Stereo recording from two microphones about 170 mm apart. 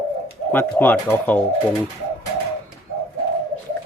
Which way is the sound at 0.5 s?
10° left (ahead or behind).